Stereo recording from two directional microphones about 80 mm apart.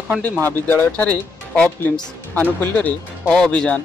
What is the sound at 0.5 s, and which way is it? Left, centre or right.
Speech, left.